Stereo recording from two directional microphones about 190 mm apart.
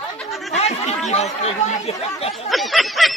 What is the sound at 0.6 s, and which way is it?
Chatter, 35° left (ahead or behind).